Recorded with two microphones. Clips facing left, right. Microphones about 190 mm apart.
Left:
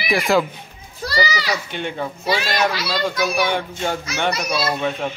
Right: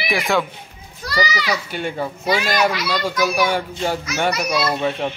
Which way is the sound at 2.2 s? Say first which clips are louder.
Right 2 dB; 30° left (ahead or behind).